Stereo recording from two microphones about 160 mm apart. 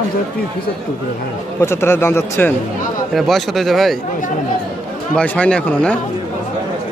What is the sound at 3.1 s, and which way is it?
Speech, centre (ahead or behind).